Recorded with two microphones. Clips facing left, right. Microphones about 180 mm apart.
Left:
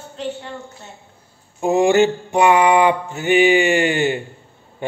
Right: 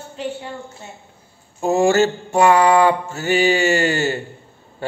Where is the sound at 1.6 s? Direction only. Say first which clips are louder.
Left 1 dB; 15° left (ahead or behind).